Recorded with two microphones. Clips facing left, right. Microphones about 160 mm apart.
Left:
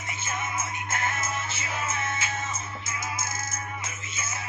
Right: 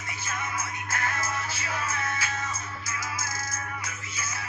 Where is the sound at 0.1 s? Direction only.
25° left (ahead or behind).